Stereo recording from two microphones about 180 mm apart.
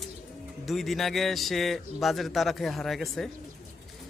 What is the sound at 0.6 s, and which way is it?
Speech, centre (ahead or behind).